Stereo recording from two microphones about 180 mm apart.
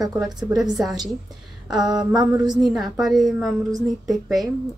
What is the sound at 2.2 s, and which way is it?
Speech, 20° right (ahead or behind).